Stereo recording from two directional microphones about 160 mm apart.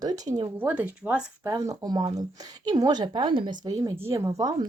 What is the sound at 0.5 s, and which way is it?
Speech, 10° right (ahead or behind).